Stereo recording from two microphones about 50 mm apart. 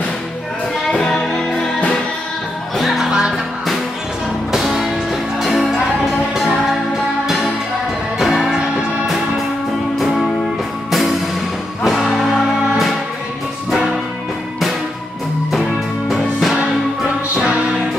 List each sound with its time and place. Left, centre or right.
0.8 s music: centre
2.8 s music: centre
3.1 s music: centre
4.5 s music: centre
9.9 s music: centre
15.6 s music: centre